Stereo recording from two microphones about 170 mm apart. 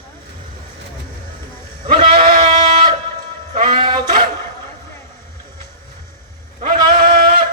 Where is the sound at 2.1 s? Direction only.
55° right (ahead or behind).